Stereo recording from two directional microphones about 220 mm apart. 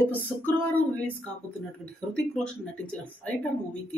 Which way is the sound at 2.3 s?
5° left (ahead or behind).